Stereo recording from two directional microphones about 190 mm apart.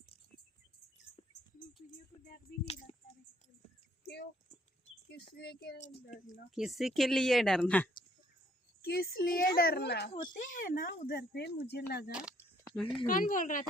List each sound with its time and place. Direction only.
1.8 s music: 40° left (ahead or behind)
4.0 s a sound: 60° left (ahead or behind)
5.4 s speech: 60° left (ahead or behind)
5.8 s speech: 40° left (ahead or behind)
6.5 s speech: centre (ahead or behind)
8.8 s speech: 55° left (ahead or behind)
10.1 s speech: 25° left (ahead or behind)
10.4 s speech: 45° left (ahead or behind)
12.6 s a sound: 5° left (ahead or behind)
13.1 s speech: 45° left (ahead or behind)